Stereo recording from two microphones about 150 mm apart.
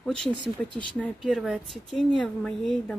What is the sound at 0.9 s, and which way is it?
Speech, 5° left (ahead or behind).